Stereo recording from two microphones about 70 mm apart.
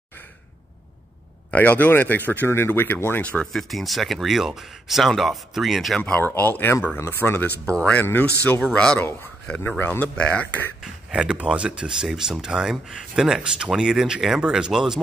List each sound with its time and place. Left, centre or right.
1.5 s speech: left
3.2 s speech: centre
3.5 s speech: centre
5.9 s speech: centre
6.2 s speech: left
7.6 s speech: centre
8.7 s speech: centre
9.6 s speech: left
10.8 s speech: centre